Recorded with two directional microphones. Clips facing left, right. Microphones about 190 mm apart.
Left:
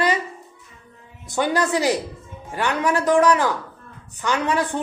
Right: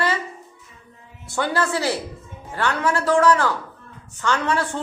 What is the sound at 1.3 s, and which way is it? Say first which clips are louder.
A man's voice: left 2 dB; 15° left (ahead or behind).